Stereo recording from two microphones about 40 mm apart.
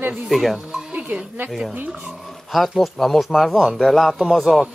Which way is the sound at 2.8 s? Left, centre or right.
Centre.